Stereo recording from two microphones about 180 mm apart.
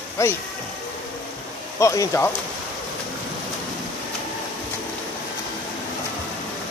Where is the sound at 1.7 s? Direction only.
15° left (ahead or behind).